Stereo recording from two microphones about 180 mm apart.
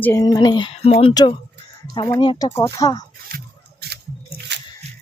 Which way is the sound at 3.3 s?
60° right (ahead or behind).